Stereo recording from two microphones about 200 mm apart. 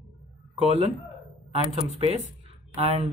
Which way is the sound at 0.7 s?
30° right (ahead or behind).